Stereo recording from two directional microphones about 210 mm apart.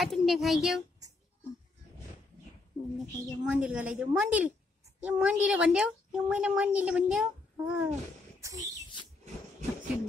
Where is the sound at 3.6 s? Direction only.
10° right (ahead or behind).